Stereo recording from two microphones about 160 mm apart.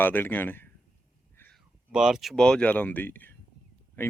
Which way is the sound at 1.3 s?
10° left (ahead or behind).